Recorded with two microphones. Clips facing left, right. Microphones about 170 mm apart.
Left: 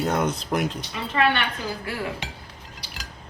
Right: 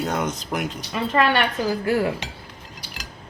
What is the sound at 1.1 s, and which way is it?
Speech, 40° right (ahead or behind).